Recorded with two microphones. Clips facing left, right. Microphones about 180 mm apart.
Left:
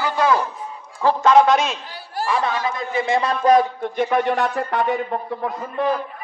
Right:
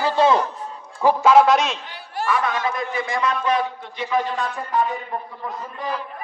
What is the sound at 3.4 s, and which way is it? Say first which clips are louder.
Speech: left 7 dB; 45° left (ahead or behind).